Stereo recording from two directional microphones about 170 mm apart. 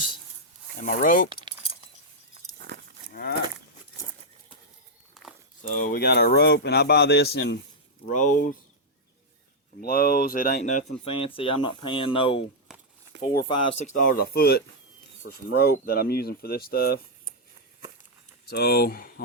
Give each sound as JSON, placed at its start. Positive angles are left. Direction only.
{"t": 0.8, "sound": "speech", "side_deg": 50}
{"t": 2.6, "sound": "livestock", "side_deg": -75}
{"t": 3.1, "sound": "cattle", "side_deg": 60}
{"t": 5.6, "sound": "a man's voice", "side_deg": 55}
{"t": 8.1, "sound": "speech", "side_deg": 50}
{"t": 9.8, "sound": "speech", "side_deg": 60}
{"t": 11.0, "sound": "speech", "side_deg": 35}
{"t": 13.7, "sound": "speech", "side_deg": 45}
{"t": 14.2, "sound": "speech", "side_deg": 65}
{"t": 18.4, "sound": "speech", "side_deg": 65}